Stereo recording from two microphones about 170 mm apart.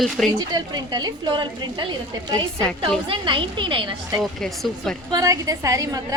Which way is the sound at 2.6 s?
5° left (ahead or behind).